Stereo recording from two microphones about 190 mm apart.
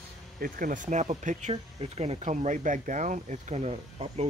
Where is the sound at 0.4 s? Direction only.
45° right (ahead or behind).